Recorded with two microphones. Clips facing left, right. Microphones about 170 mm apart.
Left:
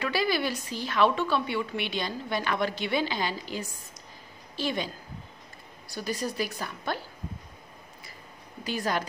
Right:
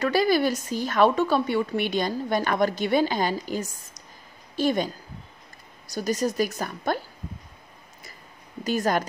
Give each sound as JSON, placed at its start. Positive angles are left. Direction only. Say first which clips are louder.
{"t": 0.0, "sound": "a woman's voice", "louder": "right 6 dB", "side_deg": -45}
{"t": 8.6, "sound": "a woman's voice", "louder": "right 6 dB", "side_deg": -45}